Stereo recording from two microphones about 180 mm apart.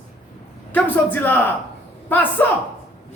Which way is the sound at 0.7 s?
10° left (ahead or behind).